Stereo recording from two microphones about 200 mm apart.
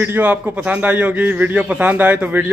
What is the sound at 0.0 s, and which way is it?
A man's voice, 10° right (ahead or behind).